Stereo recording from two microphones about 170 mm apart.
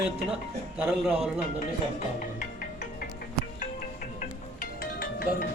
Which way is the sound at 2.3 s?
55° left (ahead or behind).